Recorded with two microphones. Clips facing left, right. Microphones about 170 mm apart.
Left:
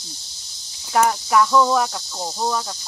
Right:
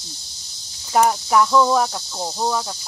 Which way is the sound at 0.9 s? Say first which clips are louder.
Right 1 dB; 5° right (ahead or behind).